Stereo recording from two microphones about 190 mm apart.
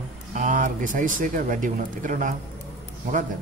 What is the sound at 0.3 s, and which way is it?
Speech, 40° right (ahead or behind).